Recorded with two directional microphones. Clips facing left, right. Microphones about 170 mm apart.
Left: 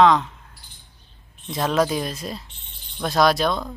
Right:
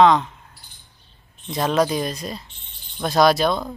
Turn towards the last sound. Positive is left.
turn(degrees=0)  # may be behind; listen again after turning